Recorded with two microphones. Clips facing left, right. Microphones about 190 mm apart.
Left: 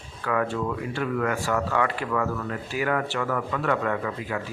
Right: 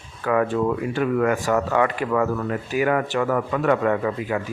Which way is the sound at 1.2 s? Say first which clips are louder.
Right 4 dB; 20° right (ahead or behind).